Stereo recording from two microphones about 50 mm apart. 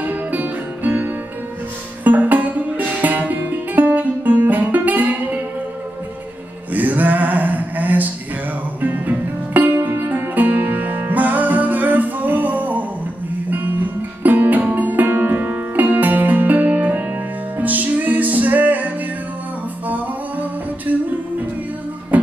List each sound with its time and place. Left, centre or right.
0.0 s music: right
6.7 s a sound: right
8.8 s music: right
14.2 s music: right
19.9 s music: right
22.1 s music: right